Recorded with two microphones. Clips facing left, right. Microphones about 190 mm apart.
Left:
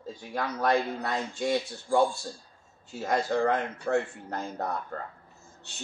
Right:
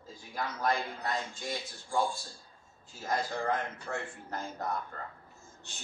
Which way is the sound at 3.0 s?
65° left (ahead or behind).